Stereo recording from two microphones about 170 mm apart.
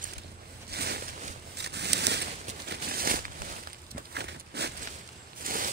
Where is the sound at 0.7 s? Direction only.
70° right (ahead or behind).